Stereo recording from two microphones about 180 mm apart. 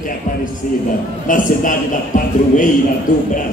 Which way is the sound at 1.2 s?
50° left (ahead or behind).